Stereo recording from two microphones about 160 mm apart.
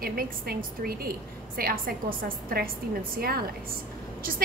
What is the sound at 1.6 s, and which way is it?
A woman's voice, 65° right (ahead or behind).